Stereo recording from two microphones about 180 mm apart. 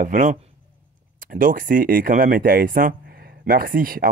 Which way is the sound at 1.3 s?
50° right (ahead or behind).